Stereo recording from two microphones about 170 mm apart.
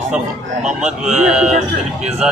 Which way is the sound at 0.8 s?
5° right (ahead or behind).